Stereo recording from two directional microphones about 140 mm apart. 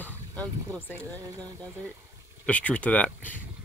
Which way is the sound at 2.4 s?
10° left (ahead or behind).